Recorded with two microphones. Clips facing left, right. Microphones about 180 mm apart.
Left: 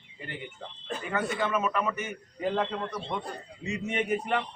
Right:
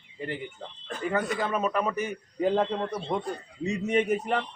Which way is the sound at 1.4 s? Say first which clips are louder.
Right 1 dB; 35° right (ahead or behind).